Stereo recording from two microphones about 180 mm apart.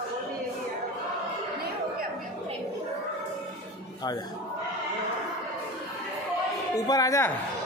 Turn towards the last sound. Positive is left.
turn(degrees=15)  # may be behind; listen again after turning